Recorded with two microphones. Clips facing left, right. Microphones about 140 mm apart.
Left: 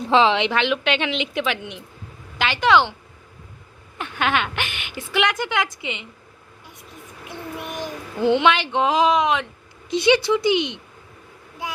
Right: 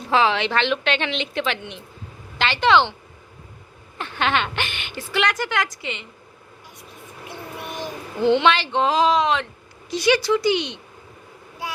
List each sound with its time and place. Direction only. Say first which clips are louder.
0.1 s a woman's voice: left 2 dB; 20° left (ahead or behind)
3.9 s a woman's voice: even; 5° left (ahead or behind)
7.6 s child singing: right 1 dB; 15° left (ahead or behind)
8.7 s a woman's voice: even; 15° left (ahead or behind)